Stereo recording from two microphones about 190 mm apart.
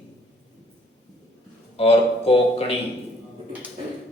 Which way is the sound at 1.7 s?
30° left (ahead or behind).